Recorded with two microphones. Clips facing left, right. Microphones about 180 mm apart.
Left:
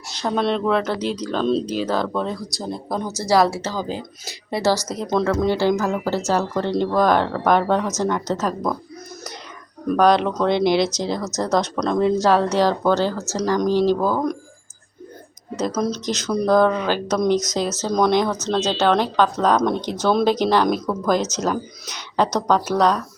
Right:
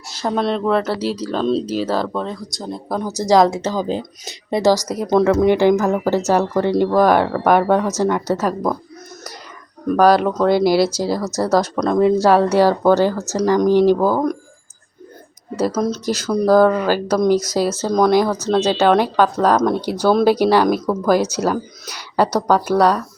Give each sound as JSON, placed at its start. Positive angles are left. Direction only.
{"t": 0.2, "sound": "speech", "side_deg": -5}
{"t": 3.1, "sound": "speech", "side_deg": -15}
{"t": 9.9, "sound": "speech", "side_deg": -5}
{"t": 15.6, "sound": "speech", "side_deg": -5}